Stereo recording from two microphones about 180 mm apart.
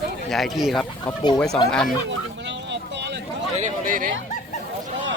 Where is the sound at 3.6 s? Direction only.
45° right (ahead or behind).